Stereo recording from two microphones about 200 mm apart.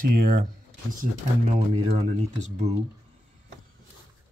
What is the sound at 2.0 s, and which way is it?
Speech, 35° right (ahead or behind).